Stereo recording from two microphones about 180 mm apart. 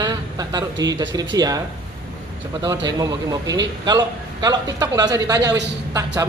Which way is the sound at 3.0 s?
20° right (ahead or behind).